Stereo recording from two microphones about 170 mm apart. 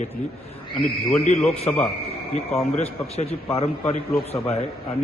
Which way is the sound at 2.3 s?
40° left (ahead or behind).